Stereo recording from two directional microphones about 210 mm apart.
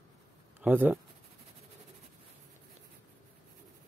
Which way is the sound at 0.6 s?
5° right (ahead or behind).